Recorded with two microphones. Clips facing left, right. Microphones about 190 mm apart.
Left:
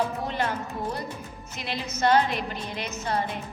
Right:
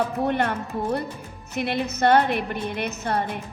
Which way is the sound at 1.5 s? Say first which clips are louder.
Right 8 dB; 60° right (ahead or behind).